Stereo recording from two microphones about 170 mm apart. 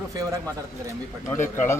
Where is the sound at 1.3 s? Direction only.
15° left (ahead or behind).